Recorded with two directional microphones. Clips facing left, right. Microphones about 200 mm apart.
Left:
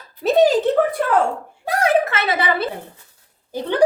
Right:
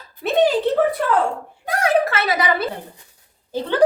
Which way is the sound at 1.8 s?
25° left (ahead or behind).